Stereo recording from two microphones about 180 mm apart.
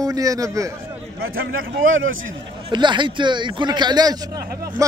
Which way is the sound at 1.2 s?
90° right.